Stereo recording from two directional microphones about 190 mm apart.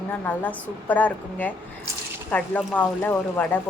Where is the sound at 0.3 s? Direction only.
10° left (ahead or behind).